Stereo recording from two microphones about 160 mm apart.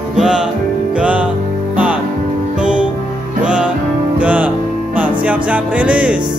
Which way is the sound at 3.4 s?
5° right (ahead or behind).